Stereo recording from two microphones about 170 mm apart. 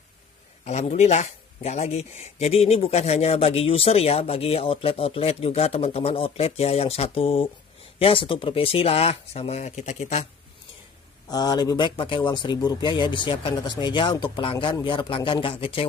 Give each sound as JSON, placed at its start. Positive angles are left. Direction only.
{"t": 0.7, "sound": "speech", "side_deg": 40}
{"t": 11.2, "sound": "speech", "side_deg": 25}